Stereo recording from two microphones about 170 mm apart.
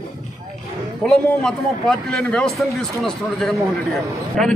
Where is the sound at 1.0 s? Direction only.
5° left (ahead or behind).